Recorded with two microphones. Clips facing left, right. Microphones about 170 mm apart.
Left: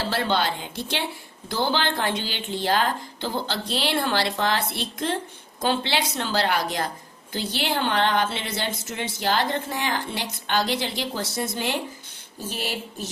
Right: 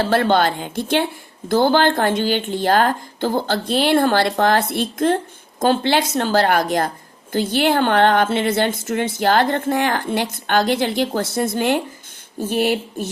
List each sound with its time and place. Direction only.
0.0 s a woman's voice: 50° right (ahead or behind)